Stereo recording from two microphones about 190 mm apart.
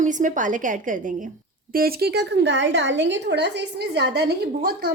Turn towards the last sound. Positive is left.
turn(degrees=-55)  # may be behind; listen again after turning